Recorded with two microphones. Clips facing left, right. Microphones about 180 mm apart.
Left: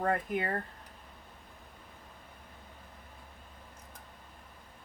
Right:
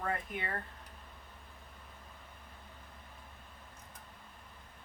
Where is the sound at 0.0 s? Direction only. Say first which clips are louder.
Left 7 dB; 40° left (ahead or behind).